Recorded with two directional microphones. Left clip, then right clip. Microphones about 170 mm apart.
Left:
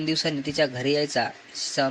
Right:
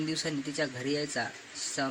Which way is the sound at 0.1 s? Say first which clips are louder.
Left 8 dB; 30° left (ahead or behind).